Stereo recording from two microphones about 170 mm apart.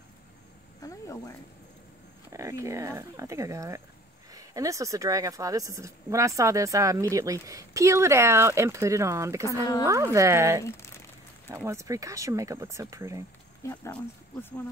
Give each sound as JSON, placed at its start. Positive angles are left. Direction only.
{"t": 0.8, "sound": "a sound", "side_deg": 20}
{"t": 2.3, "sound": "speech", "side_deg": -20}
{"t": 13.6, "sound": "speech", "side_deg": 15}